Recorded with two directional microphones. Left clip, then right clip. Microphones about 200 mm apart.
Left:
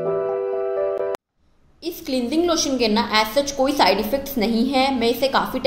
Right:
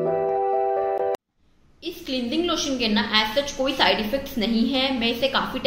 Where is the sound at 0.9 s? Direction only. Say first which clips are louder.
Even; centre (ahead or behind).